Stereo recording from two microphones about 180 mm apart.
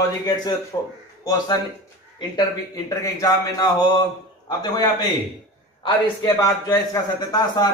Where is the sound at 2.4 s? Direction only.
20° left (ahead or behind).